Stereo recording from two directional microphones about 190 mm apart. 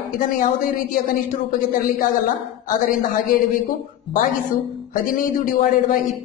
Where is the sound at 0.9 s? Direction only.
45° left (ahead or behind).